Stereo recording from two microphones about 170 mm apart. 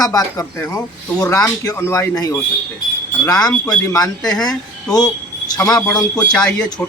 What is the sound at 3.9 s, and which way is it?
Speech, 20° left (ahead or behind).